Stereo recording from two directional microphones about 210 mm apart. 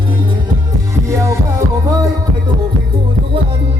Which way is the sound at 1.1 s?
15° right (ahead or behind).